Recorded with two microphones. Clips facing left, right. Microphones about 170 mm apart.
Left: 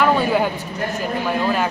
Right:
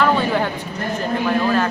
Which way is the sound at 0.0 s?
10° left (ahead or behind).